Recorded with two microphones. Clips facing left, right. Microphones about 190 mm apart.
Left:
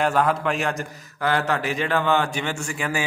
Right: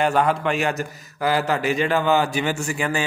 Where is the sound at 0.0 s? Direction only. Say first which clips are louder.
Right 1 dB; centre (ahead or behind).